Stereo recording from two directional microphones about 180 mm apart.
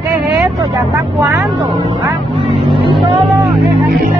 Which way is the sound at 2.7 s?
30° right (ahead or behind).